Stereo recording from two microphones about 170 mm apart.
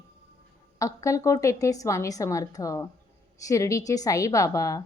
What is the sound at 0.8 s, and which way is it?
A woman's voice, 20° left (ahead or behind).